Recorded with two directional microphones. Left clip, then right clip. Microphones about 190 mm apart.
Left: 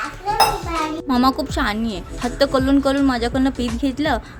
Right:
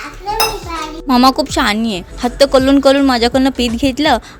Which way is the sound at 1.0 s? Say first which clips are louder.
Right 10 dB; 35° right (ahead or behind).